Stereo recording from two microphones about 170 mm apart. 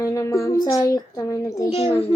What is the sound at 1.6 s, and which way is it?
Speech, 40° left (ahead or behind).